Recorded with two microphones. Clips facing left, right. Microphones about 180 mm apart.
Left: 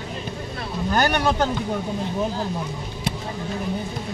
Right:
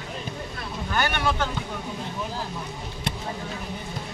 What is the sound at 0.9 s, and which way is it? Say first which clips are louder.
Speech: left 5 dB; 40° left (ahead or behind).